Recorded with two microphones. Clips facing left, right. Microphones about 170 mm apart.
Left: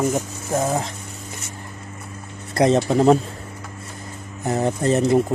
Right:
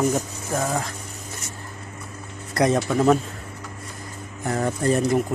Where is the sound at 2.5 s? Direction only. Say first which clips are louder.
Left 3 dB; 25° left (ahead or behind).